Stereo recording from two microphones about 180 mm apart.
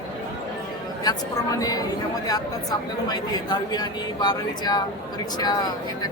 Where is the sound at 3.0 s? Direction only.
20° left (ahead or behind).